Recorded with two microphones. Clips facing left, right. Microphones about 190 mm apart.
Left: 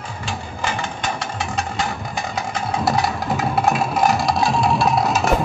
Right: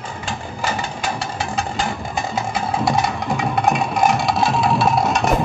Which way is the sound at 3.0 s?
Centre (ahead or behind).